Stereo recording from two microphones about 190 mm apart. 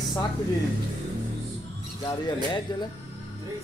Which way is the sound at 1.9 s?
20° left (ahead or behind).